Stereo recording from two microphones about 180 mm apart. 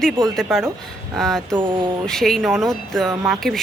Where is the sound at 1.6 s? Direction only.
25° right (ahead or behind).